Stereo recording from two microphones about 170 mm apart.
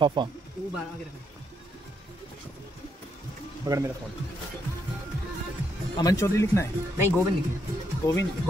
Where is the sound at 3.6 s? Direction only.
20° right (ahead or behind).